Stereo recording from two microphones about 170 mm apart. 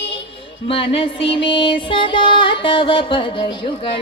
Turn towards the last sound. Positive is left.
turn(degrees=30)  # may be behind; listen again after turning